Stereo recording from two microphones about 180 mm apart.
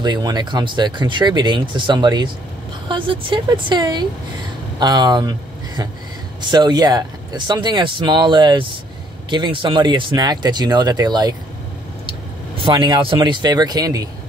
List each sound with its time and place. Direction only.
0.0 s speech: 25° right (ahead or behind)
6.4 s speech: 25° right (ahead or behind)
12.6 s speech: 25° right (ahead or behind)